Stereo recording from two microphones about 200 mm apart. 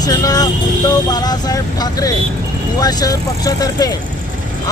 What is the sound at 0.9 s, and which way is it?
Speech, 20° left (ahead or behind).